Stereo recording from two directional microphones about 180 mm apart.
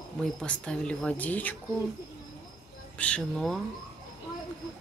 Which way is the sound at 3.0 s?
5° left (ahead or behind).